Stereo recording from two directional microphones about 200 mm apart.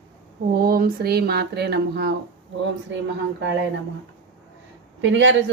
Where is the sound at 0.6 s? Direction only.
50° right (ahead or behind).